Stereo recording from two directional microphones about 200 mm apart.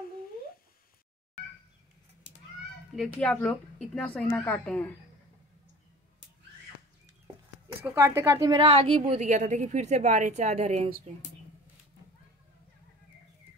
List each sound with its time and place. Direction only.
3.2 s a woman's voice: 5° left (ahead or behind)
7.8 s a woman's voice: 15° right (ahead or behind); by 10.9 s 35° right (ahead or behind)